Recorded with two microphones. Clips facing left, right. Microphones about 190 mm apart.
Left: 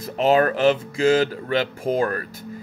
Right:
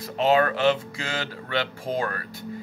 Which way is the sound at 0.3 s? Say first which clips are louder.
Left 3 dB; 40° left (ahead or behind).